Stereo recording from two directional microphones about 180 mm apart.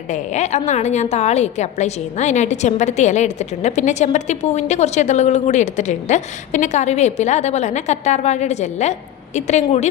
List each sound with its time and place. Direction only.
0.1 s a woman's voice: 40° left (ahead or behind)